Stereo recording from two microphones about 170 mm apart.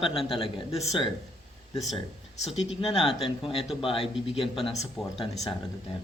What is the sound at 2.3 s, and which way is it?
Speech, 35° left (ahead or behind).